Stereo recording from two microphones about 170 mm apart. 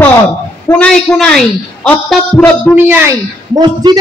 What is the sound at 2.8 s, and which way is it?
Speech, 10° right (ahead or behind).